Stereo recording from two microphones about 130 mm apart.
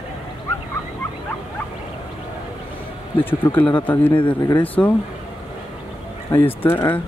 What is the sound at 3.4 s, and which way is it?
Speech, 15° left (ahead or behind).